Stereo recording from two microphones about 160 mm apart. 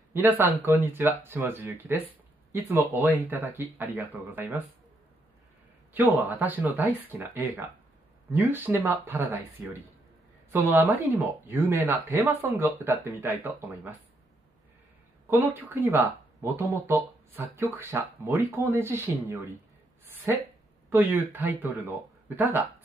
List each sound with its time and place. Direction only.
0.1 s speech: 15° right (ahead or behind)
5.9 s speech: 10° right (ahead or behind)
15.2 s speech: 15° right (ahead or behind)